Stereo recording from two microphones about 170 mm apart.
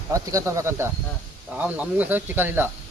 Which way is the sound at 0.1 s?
20° right (ahead or behind).